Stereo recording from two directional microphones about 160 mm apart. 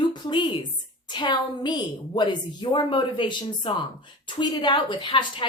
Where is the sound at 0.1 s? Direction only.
30° left (ahead or behind).